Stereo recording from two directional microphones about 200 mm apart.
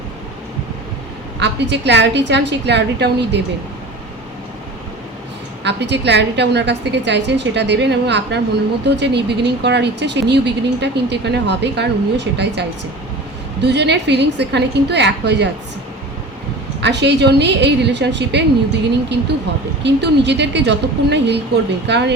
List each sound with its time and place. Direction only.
1.4 s a woman's voice: 60° right (ahead or behind)
5.6 s a woman's voice: 60° right (ahead or behind)
16.8 s a woman's voice: 60° right (ahead or behind)
19.8 s a woman's voice: 60° right (ahead or behind)